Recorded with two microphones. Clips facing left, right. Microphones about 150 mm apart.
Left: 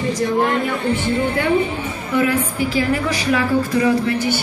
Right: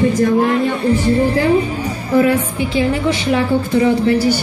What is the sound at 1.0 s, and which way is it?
A woman's voice, 35° right (ahead or behind).